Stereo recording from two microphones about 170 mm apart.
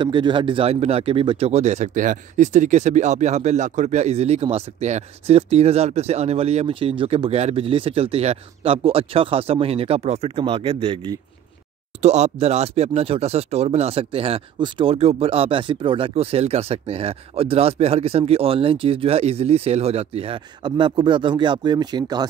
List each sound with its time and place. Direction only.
0.0 s speech: 30° right (ahead or behind)